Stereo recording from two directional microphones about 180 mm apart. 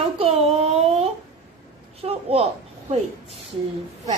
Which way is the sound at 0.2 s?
35° right (ahead or behind).